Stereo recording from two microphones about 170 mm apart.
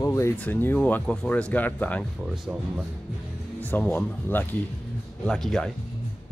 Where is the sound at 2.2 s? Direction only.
5° right (ahead or behind).